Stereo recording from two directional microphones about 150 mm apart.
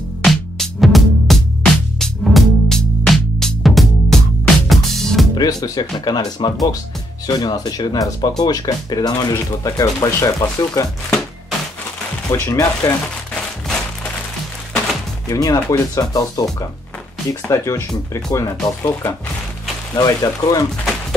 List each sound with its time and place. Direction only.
0.2 s music: centre (ahead or behind)
5.3 s speech: 25° left (ahead or behind)
12.3 s speech: 20° left (ahead or behind)
15.2 s speech: 25° left (ahead or behind)